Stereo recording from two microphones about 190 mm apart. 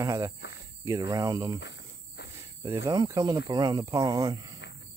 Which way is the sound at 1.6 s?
65° left (ahead or behind).